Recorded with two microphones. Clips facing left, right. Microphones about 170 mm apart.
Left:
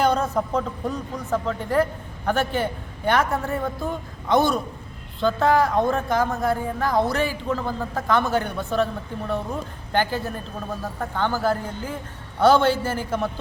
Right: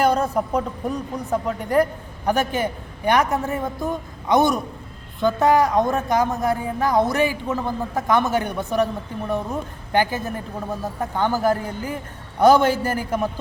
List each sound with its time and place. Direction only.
0.0 s a man's voice: 10° right (ahead or behind)